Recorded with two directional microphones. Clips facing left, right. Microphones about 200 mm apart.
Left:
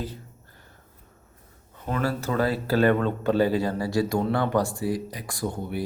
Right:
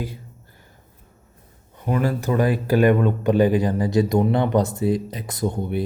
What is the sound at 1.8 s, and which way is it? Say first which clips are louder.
A man's voice: right 5 dB; 15° right (ahead or behind).